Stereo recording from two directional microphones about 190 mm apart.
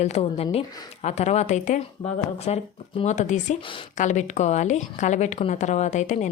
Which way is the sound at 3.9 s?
40° left (ahead or behind).